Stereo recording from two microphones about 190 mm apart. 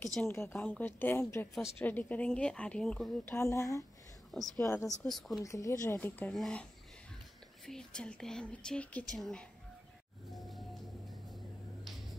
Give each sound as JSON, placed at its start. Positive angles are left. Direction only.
{"t": 0.0, "sound": "a woman's voice", "side_deg": 10}
{"t": 4.3, "sound": "speech", "side_deg": 0}
{"t": 4.6, "sound": "a woman's voice", "side_deg": 15}
{"t": 5.0, "sound": "a woman's voice", "side_deg": 0}
{"t": 5.4, "sound": "a woman's voice", "side_deg": 15}
{"t": 10.3, "sound": "music", "side_deg": 0}
{"t": 11.8, "sound": "a sound", "side_deg": 0}